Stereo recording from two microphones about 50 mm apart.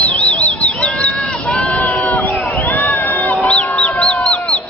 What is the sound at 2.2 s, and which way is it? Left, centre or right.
Crowd, left.